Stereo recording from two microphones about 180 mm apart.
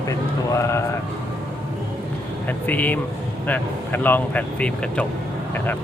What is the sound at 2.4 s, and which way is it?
Speech, 10° left (ahead or behind).